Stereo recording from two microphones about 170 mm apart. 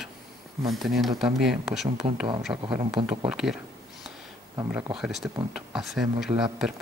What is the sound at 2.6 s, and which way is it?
Speech, 30° right (ahead or behind).